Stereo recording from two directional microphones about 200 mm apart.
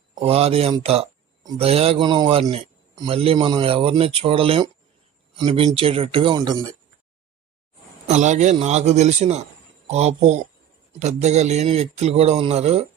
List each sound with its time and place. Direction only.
0.2 s a man's voice: 30° right (ahead or behind)
8.0 s a man's voice: 35° right (ahead or behind)